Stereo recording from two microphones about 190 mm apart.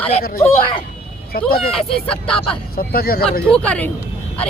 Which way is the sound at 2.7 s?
50° left (ahead or behind).